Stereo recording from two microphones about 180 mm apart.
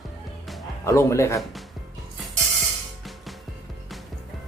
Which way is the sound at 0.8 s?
15° left (ahead or behind).